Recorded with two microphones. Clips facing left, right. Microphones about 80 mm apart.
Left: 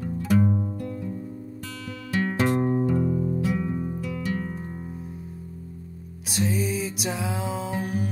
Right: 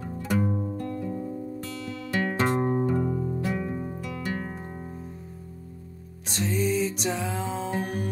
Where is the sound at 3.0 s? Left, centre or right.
Centre.